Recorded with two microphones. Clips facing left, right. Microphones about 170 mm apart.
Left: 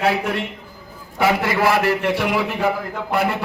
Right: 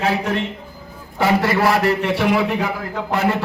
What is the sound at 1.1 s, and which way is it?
Speech, 10° left (ahead or behind).